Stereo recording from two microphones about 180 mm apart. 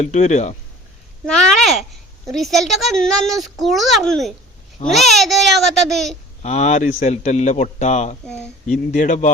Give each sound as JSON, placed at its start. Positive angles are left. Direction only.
{"t": 0.0, "sound": "a man's voice", "side_deg": 40}
{"t": 1.3, "sound": "a woman's voice", "side_deg": 5}
{"t": 6.4, "sound": "a man's voice", "side_deg": 40}
{"t": 8.3, "sound": "a woman's voice", "side_deg": 5}
{"t": 8.9, "sound": "a man's voice", "side_deg": 45}